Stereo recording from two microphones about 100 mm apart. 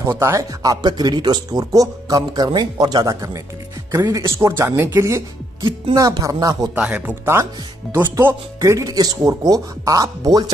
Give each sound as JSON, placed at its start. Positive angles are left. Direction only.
{"t": 0.0, "sound": "speech", "side_deg": -30}
{"t": 6.8, "sound": "speech", "side_deg": -15}
{"t": 8.5, "sound": "speech", "side_deg": -35}